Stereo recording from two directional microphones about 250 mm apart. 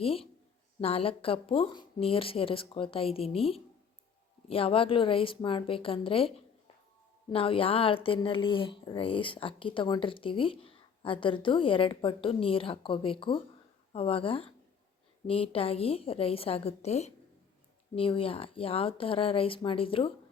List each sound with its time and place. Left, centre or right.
0.0 s a woman's voice: left